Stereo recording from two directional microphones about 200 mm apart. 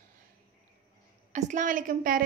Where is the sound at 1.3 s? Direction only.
40° right (ahead or behind).